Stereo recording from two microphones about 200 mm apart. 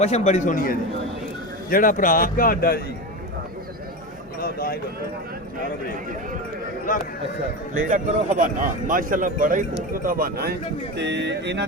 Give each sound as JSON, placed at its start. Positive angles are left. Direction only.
{"t": 0.0, "sound": "a man's voice", "side_deg": 35}
{"t": 4.4, "sound": "a sound", "side_deg": 50}
{"t": 7.9, "sound": "speech", "side_deg": -40}